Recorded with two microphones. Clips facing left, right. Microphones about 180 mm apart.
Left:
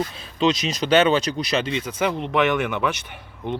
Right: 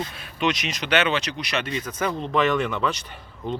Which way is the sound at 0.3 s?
30° left (ahead or behind).